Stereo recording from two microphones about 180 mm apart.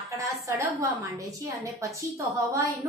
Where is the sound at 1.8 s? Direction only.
15° right (ahead or behind).